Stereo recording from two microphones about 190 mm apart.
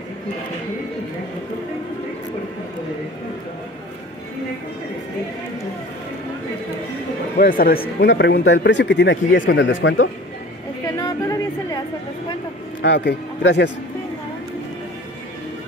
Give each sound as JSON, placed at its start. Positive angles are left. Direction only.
{"t": 7.3, "sound": "speech", "side_deg": 50}
{"t": 8.0, "sound": "speech", "side_deg": 60}
{"t": 11.0, "sound": "music", "side_deg": 20}
{"t": 12.8, "sound": "speech", "side_deg": 65}